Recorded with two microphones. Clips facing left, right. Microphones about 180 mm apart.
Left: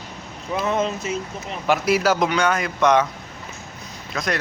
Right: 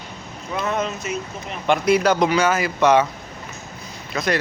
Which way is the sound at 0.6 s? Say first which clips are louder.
Left 2 dB; 25° left (ahead or behind).